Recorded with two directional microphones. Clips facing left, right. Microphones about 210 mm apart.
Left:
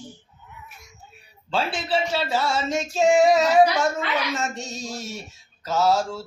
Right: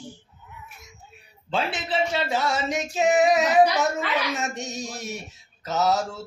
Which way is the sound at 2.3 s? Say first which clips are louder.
Left 1 dB; 15° right (ahead or behind).